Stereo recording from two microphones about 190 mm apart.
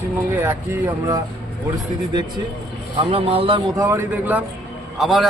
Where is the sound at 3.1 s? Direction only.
30° right (ahead or behind).